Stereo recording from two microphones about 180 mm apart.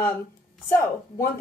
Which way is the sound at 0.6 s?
15° left (ahead or behind).